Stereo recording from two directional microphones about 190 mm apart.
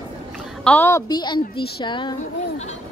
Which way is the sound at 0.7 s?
10° left (ahead or behind).